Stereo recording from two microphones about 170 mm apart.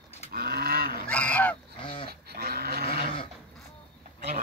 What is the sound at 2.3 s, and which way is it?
Sheep, 65° right (ahead or behind).